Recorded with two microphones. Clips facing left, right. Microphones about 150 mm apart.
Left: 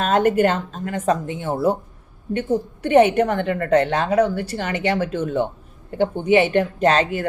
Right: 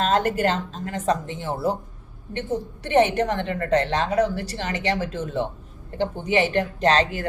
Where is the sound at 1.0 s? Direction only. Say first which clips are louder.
Left 3 dB; 10° left (ahead or behind).